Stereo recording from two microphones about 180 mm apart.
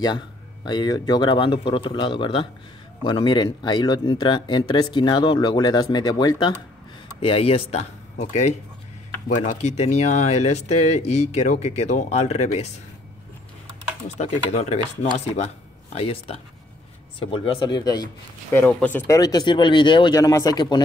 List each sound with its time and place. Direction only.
0.7 s speech: 25° left (ahead or behind)
14.0 s speech: 35° left (ahead or behind); by 18.6 s 20° left (ahead or behind)
18.6 s speech: 10° left (ahead or behind); by 20.8 s 25° left (ahead or behind)